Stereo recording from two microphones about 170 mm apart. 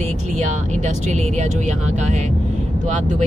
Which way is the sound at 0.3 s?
45° right (ahead or behind).